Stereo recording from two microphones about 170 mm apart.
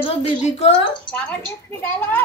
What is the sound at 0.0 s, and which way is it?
Speech, 40° left (ahead or behind).